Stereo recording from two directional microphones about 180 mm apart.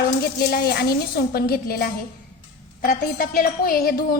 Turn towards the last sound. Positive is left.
turn(degrees=55)  # may be behind; listen again after turning